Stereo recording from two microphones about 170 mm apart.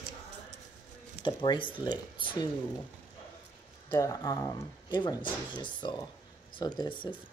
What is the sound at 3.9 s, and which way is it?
Speech, 20° left (ahead or behind).